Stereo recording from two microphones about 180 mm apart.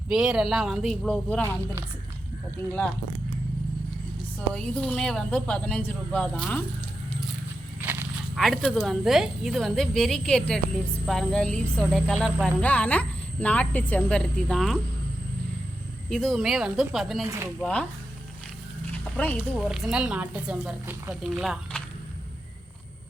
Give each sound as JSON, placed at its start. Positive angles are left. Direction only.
{"t": 0.1, "sound": "speech", "side_deg": -5}
{"t": 4.5, "sound": "speech", "side_deg": 5}
{"t": 8.4, "sound": "speech", "side_deg": 0}
{"t": 16.0, "sound": "speech", "side_deg": 0}
{"t": 17.2, "sound": "speech", "side_deg": -15}
{"t": 17.6, "sound": "speech", "side_deg": 5}
{"t": 19.1, "sound": "speech", "side_deg": 5}